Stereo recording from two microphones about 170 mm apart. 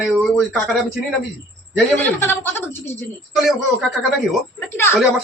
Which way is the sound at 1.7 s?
10° left (ahead or behind).